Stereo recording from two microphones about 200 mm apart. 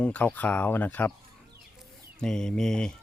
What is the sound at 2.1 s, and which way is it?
Speech, 5° left (ahead or behind).